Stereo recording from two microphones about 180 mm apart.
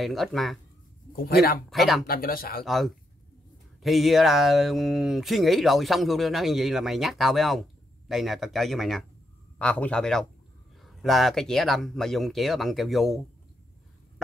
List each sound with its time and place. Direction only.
0.0 s speech: centre (ahead or behind)
1.1 s speech: 60° left (ahead or behind)
1.7 s speech: centre (ahead or behind)
2.0 s speech: 55° left (ahead or behind)
2.6 s speech: centre (ahead or behind)